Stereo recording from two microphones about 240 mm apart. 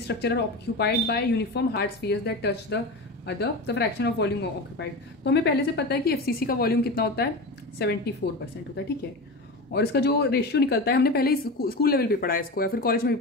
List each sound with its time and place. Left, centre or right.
0.0 s speech: left
9.7 s a woman's voice: left